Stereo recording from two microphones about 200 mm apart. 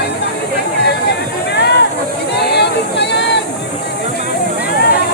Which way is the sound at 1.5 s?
60° left (ahead or behind).